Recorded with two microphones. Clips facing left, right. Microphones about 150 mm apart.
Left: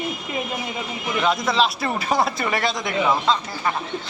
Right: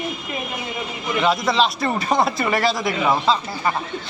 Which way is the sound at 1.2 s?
Centre (ahead or behind).